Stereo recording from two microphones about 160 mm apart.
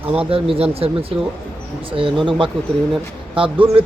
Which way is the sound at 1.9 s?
30° right (ahead or behind).